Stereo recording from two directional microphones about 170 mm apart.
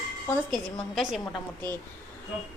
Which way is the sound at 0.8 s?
Centre (ahead or behind).